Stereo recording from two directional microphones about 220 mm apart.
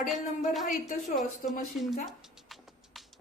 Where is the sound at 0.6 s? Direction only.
35° left (ahead or behind).